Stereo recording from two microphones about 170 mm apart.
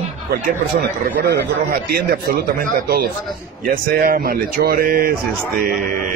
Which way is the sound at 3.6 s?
55° right (ahead or behind).